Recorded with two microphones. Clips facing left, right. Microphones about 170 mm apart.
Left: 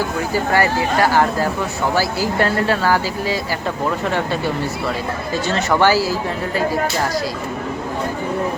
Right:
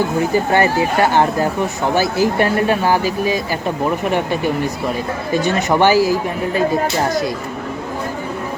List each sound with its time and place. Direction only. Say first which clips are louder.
0.3 s speech: right 2 dB; 20° right (ahead or behind)